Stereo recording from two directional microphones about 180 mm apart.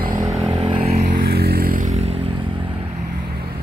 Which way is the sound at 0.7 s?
30° right (ahead or behind).